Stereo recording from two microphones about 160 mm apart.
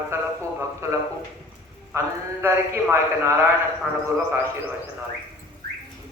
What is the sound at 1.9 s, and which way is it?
A man's voice, 15° right (ahead or behind).